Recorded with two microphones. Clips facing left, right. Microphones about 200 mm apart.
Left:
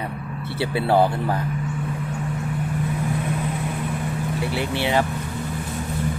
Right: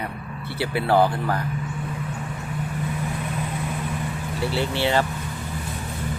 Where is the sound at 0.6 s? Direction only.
25° left (ahead or behind).